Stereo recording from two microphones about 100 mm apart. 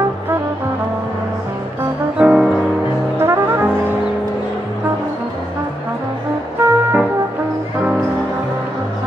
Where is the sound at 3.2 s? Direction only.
25° right (ahead or behind).